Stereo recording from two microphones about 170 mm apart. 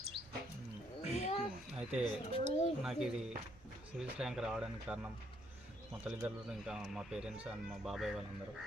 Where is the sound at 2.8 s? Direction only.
Centre (ahead or behind).